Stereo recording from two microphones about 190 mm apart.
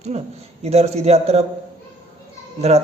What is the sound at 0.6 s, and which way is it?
Mantra, 35° right (ahead or behind).